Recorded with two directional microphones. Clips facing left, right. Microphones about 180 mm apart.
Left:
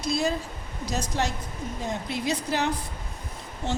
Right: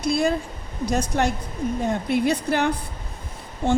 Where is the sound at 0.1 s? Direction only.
55° right (ahead or behind).